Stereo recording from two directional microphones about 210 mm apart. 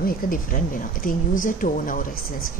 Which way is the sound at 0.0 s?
40° left (ahead or behind).